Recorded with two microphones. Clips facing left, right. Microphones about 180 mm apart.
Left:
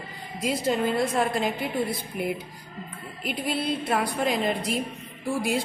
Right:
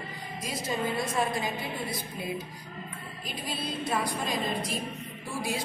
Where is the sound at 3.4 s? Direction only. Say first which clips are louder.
Left 6 dB; 60° left (ahead or behind).